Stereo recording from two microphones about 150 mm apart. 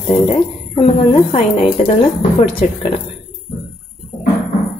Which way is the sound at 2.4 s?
35° left (ahead or behind).